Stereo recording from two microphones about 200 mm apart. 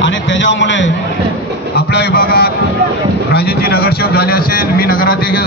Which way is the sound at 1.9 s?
55° left (ahead or behind).